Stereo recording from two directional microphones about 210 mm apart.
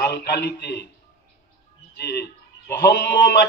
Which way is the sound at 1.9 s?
50° left (ahead or behind).